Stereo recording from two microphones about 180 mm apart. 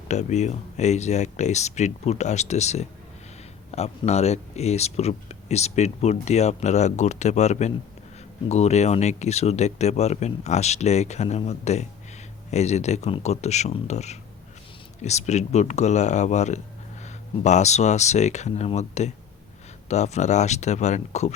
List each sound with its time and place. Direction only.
0.1 s speech: 40° left (ahead or behind)